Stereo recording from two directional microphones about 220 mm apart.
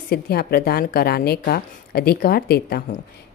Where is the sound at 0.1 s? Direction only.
45° left (ahead or behind).